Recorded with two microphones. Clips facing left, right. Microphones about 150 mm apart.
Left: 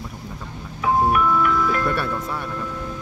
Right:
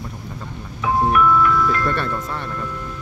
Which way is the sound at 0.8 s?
10° left (ahead or behind).